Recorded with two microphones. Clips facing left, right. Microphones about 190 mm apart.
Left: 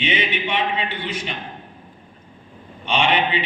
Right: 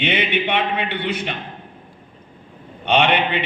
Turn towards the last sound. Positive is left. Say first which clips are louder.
# right 3 dB
turn(degrees=-60)  # may be behind; listen again after turning